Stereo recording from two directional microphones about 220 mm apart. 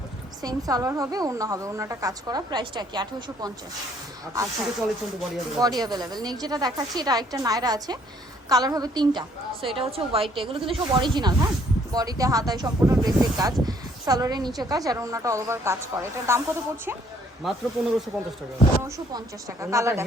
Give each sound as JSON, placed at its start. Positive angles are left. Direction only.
{"t": 0.4, "sound": "speech", "side_deg": -15}
{"t": 5.5, "sound": "a woman's voice", "side_deg": -15}
{"t": 17.4, "sound": "speech", "side_deg": 0}
{"t": 19.6, "sound": "speech", "side_deg": -15}